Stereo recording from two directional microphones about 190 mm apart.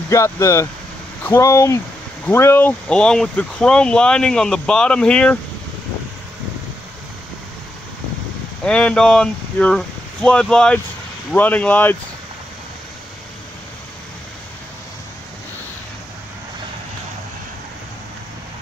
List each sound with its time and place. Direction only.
0.1 s speech: 15° left (ahead or behind)
8.6 s speech: 5° left (ahead or behind)